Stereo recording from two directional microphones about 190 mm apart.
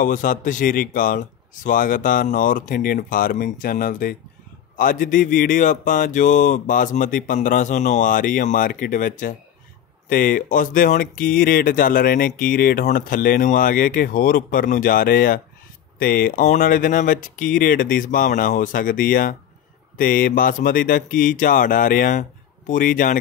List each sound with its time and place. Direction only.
0.0 s speech: 45° left (ahead or behind)